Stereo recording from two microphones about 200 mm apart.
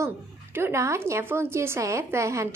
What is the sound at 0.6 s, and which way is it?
A woman's voice, 15° right (ahead or behind).